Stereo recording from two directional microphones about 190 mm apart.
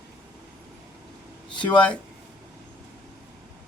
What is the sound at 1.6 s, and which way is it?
Speech, 5° left (ahead or behind).